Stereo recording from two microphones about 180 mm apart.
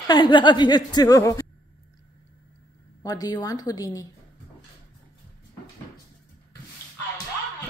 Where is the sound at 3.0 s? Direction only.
20° left (ahead or behind).